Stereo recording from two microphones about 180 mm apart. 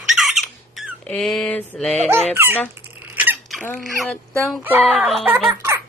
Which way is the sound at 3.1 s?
10° right (ahead or behind).